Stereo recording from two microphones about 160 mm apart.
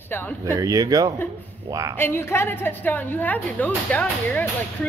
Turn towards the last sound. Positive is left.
turn(degrees=10)  # may be behind; listen again after turning